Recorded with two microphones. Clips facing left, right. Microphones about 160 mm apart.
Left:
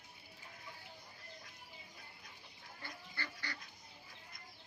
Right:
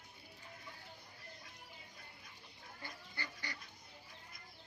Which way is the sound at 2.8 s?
20° right (ahead or behind).